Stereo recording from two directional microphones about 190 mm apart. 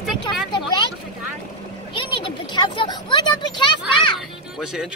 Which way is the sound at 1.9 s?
25° left (ahead or behind).